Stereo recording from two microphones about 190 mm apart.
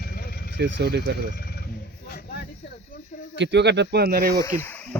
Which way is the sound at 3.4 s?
65° right (ahead or behind).